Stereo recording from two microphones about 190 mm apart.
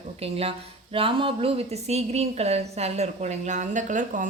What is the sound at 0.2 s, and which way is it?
A woman's voice, 30° right (ahead or behind).